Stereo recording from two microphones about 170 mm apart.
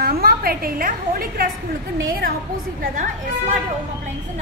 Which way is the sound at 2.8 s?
45° right (ahead or behind).